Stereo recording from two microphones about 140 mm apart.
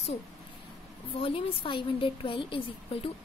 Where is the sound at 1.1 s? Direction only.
40° left (ahead or behind).